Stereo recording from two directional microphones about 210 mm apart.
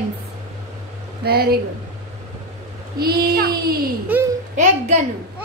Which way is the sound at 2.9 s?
45° right (ahead or behind).